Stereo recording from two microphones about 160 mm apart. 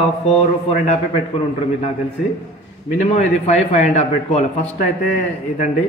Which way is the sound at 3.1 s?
45° left (ahead or behind).